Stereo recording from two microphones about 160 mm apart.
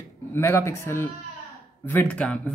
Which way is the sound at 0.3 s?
15° left (ahead or behind).